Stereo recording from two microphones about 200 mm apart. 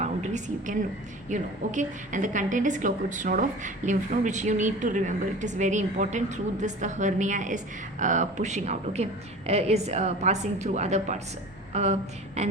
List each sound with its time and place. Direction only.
0.0 s a woman's voice: 35° right (ahead or behind)
11.7 s a sound: 35° right (ahead or behind)
12.4 s a woman's voice: 35° right (ahead or behind)